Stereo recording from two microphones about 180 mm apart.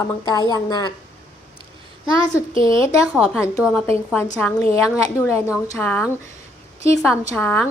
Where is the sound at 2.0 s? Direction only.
20° left (ahead or behind).